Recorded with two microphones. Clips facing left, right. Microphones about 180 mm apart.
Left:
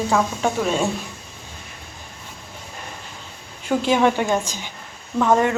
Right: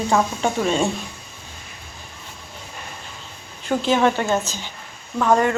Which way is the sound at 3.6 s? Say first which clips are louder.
Even; 10° left (ahead or behind).